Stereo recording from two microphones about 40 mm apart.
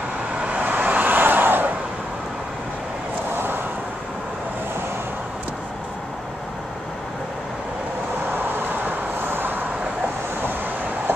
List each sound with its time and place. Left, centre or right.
0.5 s vehicle: right
3.3 s vehicle: right
8.3 s vehicle: right